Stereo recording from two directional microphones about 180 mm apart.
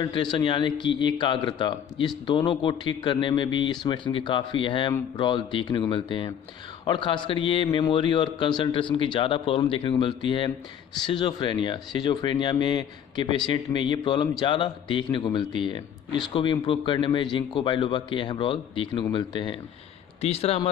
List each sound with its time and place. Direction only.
0.0 s a man's voice: 25° left (ahead or behind)